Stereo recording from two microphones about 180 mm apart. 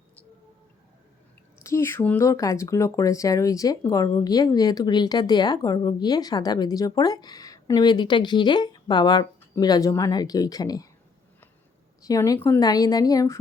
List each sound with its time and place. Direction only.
1.6 s speech: 15° left (ahead or behind)
12.0 s speech: 20° left (ahead or behind)